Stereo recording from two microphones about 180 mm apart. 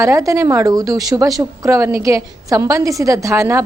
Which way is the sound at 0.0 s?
15° right (ahead or behind).